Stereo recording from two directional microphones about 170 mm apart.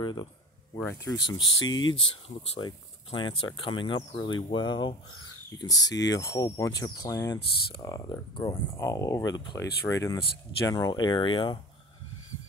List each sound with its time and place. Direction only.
0.0 s speech: 25° left (ahead or behind)